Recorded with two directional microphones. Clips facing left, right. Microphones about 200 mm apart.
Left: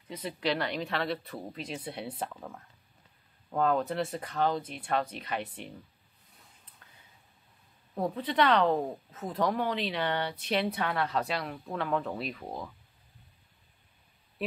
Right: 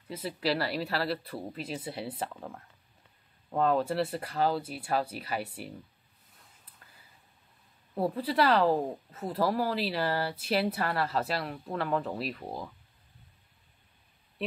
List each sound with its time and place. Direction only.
0.1 s speech: 5° right (ahead or behind)
6.8 s a sound: 5° right (ahead or behind)
7.9 s speech: 5° right (ahead or behind)